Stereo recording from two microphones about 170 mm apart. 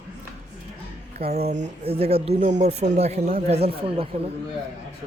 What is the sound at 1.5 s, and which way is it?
Speech, 40° right (ahead or behind).